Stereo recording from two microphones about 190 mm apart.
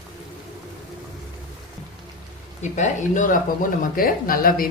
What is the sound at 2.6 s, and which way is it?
A woman's voice, 40° left (ahead or behind).